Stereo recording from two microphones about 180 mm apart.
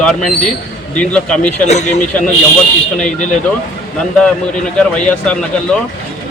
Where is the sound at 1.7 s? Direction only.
40° left (ahead or behind).